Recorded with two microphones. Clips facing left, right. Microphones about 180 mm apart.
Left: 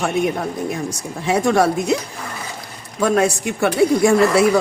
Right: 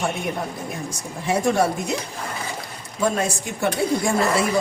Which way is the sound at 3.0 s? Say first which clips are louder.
Left 6 dB; 75° left (ahead or behind).